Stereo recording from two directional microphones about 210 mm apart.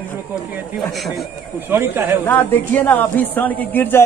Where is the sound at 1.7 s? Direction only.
10° right (ahead or behind).